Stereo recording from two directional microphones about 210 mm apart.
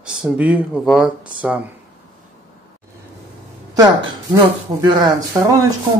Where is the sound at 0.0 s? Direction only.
5° right (ahead or behind).